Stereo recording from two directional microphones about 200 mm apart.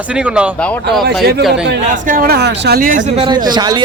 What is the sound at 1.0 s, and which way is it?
Speech, 55° right (ahead or behind).